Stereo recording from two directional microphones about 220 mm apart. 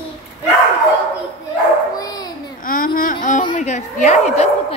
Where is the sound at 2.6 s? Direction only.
40° left (ahead or behind).